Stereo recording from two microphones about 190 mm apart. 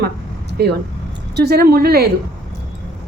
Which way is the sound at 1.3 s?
55° right (ahead or behind).